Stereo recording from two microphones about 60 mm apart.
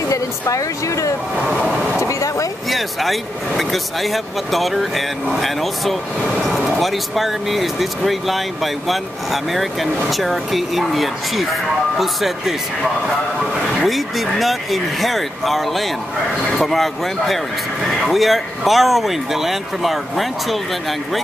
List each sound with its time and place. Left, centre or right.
0.1 s speech: left
1.5 s vehicle: centre
2.0 s vehicle: left
2.7 s speech: centre
13.7 s speech: centre